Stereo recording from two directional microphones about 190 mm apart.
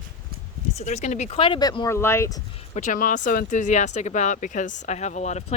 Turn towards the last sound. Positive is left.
turn(degrees=40)  # may be behind; listen again after turning